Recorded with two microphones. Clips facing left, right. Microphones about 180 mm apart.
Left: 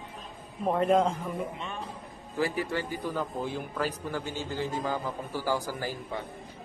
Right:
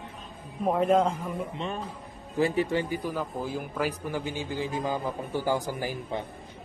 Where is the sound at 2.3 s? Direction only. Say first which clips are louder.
Right 4 dB; 25° right (ahead or behind).